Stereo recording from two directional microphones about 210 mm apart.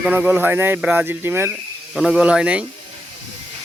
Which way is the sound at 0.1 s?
10° right (ahead or behind).